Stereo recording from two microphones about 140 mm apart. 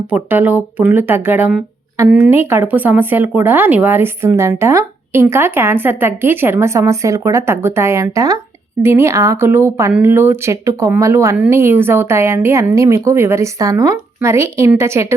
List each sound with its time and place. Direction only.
0.1 s a woman's voice: 10° right (ahead or behind)